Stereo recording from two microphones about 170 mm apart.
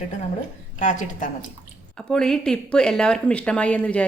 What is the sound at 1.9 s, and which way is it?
Speech, 5° left (ahead or behind).